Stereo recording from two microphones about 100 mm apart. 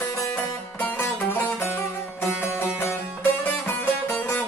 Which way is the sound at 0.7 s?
20° left (ahead or behind).